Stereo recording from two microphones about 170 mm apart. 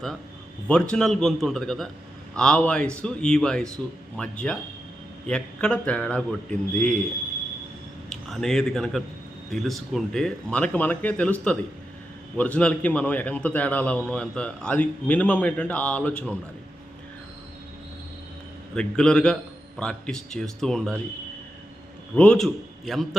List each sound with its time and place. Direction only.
0.7 s a man's voice: 5° left (ahead or behind)
8.1 s a man's voice: 5° left (ahead or behind)
18.7 s a man's voice: 5° left (ahead or behind)
22.1 s a man's voice: 5° left (ahead or behind)